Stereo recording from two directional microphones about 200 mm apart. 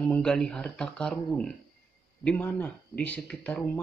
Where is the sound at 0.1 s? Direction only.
5° left (ahead or behind).